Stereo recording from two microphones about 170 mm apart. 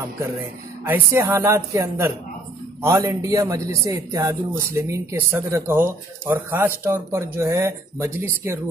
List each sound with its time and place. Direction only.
0.8 s a man's voice: 10° right (ahead or behind)